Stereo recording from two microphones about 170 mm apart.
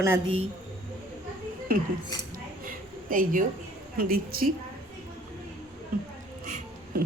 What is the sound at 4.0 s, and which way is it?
Speech, 60° right (ahead or behind).